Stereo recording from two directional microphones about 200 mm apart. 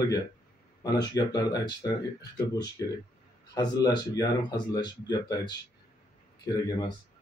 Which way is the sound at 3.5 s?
20° left (ahead or behind).